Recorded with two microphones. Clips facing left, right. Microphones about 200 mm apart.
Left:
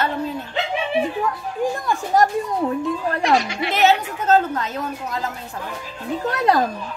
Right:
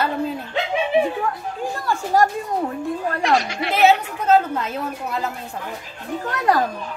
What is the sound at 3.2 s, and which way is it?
A woman's voice, centre (ahead or behind).